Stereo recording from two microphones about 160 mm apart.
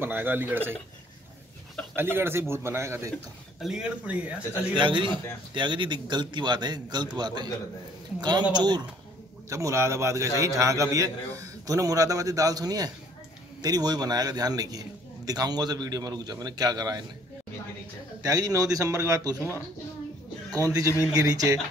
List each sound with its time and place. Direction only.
0.0 s speech: 10° right (ahead or behind)
2.0 s speech: 15° right (ahead or behind)
3.6 s speech: 5° right (ahead or behind)
4.7 s a man's voice: 30° right (ahead or behind)
18.2 s a man's voice: 20° right (ahead or behind)
19.3 s speech: 15° left (ahead or behind)
21.1 s a man's voice: 25° right (ahead or behind)